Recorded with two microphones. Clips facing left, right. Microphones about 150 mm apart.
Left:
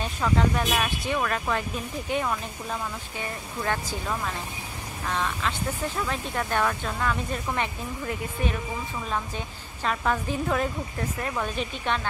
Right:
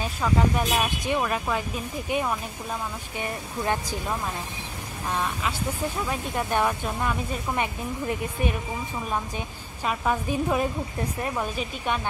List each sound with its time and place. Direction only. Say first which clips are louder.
0.0 s speech: right 1 dB; 5° right (ahead or behind)
0.7 s speech: right 1 dB; 15° right (ahead or behind)
9.8 s speech: right 1 dB; 10° right (ahead or behind)